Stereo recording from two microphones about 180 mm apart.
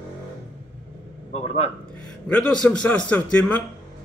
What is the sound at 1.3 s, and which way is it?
Speech, 35° left (ahead or behind).